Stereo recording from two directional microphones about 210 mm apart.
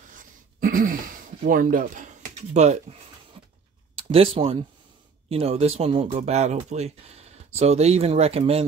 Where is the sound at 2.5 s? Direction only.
35° right (ahead or behind).